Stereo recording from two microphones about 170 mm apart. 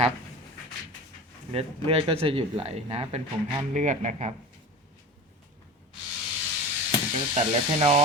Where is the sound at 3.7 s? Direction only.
45° right (ahead or behind).